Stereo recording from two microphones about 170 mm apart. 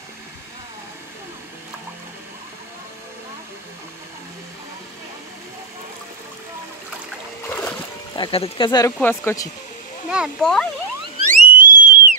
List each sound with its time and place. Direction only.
7.4 s splash: 10° left (ahead or behind)
8.2 s speech: 30° left (ahead or behind)
8.9 s speech: 10° left (ahead or behind)
10.0 s speech: 5° right (ahead or behind)
11.2 s theremin: 50° right (ahead or behind)